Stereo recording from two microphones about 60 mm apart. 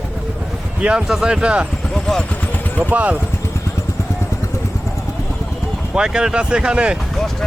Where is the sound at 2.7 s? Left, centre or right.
Right.